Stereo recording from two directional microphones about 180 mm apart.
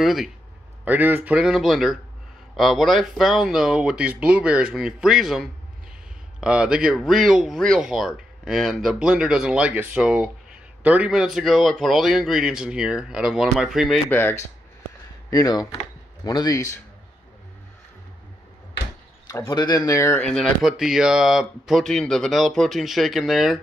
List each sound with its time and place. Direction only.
0.0 s speech: centre (ahead or behind)
14.0 s speech: 10° left (ahead or behind)
19.2 s speech: 15° left (ahead or behind)
20.2 s speech: centre (ahead or behind)